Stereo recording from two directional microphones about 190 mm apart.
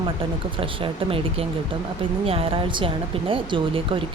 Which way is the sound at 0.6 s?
30° right (ahead or behind).